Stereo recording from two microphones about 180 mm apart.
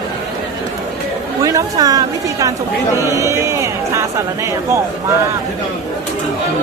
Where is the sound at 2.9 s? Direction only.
15° right (ahead or behind).